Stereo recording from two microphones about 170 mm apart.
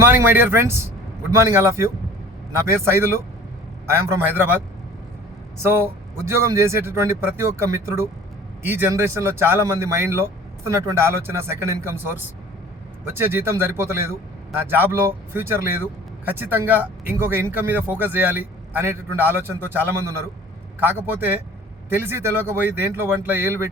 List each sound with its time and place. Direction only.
0.1 s speech: 10° right (ahead or behind)
5.6 s speech: 15° right (ahead or behind)
13.1 s speech: 15° right (ahead or behind)
15.3 s speech: 15° right (ahead or behind)